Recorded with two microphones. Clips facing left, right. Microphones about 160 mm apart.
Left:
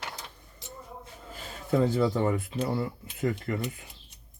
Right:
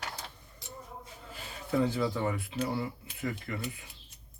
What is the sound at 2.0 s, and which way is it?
Speech, 45° left (ahead or behind).